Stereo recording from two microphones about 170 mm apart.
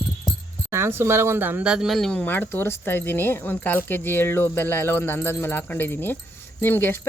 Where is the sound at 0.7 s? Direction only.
15° right (ahead or behind).